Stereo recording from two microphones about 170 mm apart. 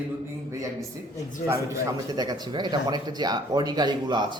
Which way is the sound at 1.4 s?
15° right (ahead or behind).